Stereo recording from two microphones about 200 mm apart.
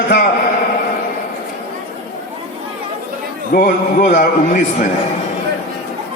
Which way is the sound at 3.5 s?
45° left (ahead or behind).